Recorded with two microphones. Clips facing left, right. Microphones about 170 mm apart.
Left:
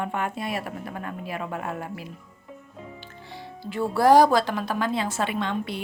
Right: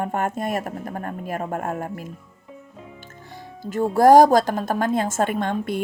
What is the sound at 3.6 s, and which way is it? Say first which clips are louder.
Speech: right 5 dB; 45° right (ahead or behind).